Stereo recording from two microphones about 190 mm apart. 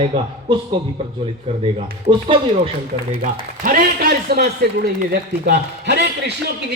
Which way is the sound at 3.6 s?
50° right (ahead or behind).